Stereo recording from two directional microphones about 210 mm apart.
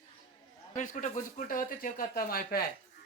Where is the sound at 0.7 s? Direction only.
35° left (ahead or behind).